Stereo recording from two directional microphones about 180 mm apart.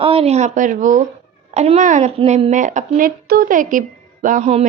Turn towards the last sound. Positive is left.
turn(degrees=-35)  # may be behind; listen again after turning